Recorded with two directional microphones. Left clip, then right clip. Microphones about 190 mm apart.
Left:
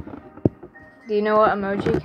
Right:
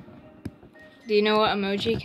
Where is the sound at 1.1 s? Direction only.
25° right (ahead or behind).